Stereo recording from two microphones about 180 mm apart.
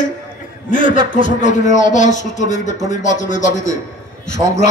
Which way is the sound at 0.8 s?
30° right (ahead or behind).